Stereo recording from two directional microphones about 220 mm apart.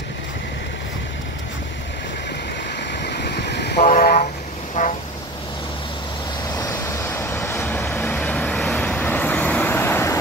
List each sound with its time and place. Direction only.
2.9 s vehicle: 50° left (ahead or behind)
6.5 s vehicle: 15° left (ahead or behind)